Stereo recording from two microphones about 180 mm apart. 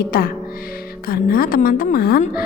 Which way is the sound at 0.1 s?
55° left (ahead or behind).